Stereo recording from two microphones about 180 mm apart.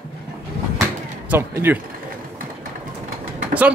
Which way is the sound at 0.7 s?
15° right (ahead or behind).